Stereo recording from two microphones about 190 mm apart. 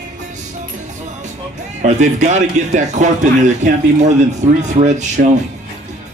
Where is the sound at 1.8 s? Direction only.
40° right (ahead or behind).